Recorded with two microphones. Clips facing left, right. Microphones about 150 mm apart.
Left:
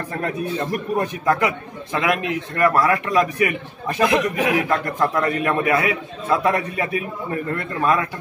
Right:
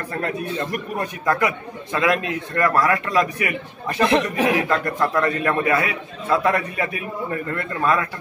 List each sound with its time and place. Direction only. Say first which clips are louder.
0.9 s a man's voice: left 2 dB; 20° left (ahead or behind)
4.1 s speech: right 1 dB; 30° right (ahead or behind)
4.6 s a man's voice: left 1 dB; 15° left (ahead or behind)